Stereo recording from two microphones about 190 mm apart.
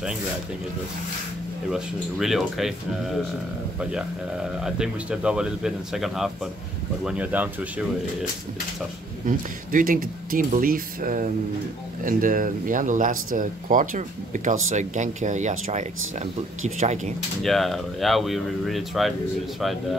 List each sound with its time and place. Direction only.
1.7 s speech: centre (ahead or behind)
3.9 s speech: 5° right (ahead or behind)
9.2 s speech: 45° right (ahead or behind)
17.4 s speech: centre (ahead or behind)